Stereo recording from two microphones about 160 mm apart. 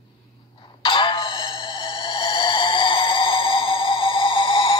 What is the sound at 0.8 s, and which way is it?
Music, 30° left (ahead or behind).